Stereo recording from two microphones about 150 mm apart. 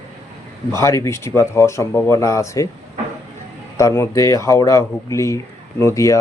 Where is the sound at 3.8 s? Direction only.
20° left (ahead or behind).